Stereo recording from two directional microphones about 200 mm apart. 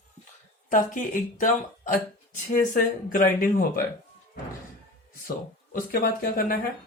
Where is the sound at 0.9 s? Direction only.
40° left (ahead or behind).